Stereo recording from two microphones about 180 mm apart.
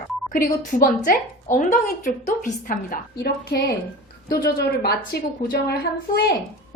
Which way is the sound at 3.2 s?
65° left (ahead or behind).